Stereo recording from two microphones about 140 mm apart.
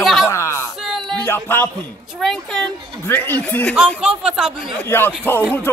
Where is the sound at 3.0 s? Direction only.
15° left (ahead or behind).